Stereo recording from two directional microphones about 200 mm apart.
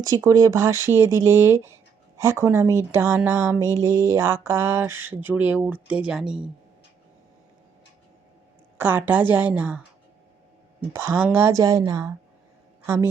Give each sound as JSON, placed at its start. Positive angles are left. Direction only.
{"t": 0.0, "sound": "speech", "side_deg": -15}
{"t": 8.8, "sound": "speech", "side_deg": -10}
{"t": 10.9, "sound": "a woman's voice", "side_deg": -15}